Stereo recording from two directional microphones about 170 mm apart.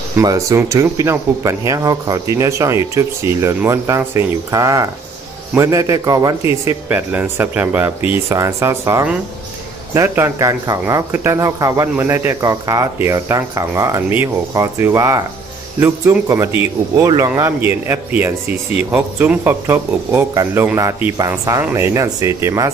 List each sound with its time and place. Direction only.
0.2 s speech: 20° right (ahead or behind)